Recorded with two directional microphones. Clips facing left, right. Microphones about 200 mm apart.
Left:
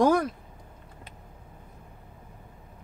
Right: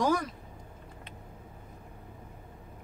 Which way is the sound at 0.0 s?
55° left (ahead or behind).